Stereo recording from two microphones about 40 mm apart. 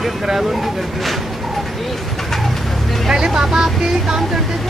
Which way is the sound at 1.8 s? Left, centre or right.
Centre.